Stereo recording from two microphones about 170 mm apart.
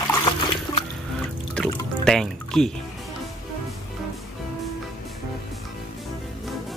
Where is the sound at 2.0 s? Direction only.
5° left (ahead or behind).